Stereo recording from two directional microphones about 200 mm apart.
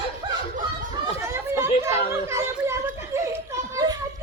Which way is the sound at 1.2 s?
15° right (ahead or behind).